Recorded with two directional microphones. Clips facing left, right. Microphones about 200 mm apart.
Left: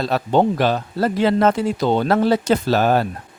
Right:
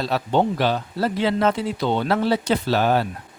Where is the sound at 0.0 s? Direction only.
45° left (ahead or behind).